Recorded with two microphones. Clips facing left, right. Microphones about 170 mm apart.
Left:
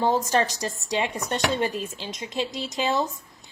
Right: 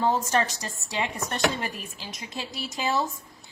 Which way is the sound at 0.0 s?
20° left (ahead or behind).